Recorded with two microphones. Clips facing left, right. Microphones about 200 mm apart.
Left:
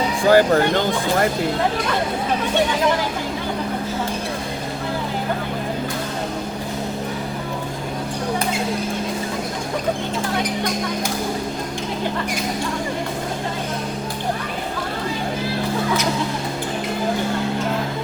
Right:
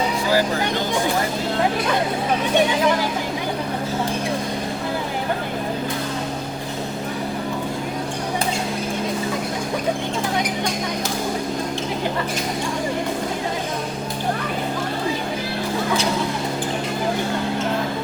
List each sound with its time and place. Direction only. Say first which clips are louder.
0.3 s speech: left 9 dB; 55° left (ahead or behind)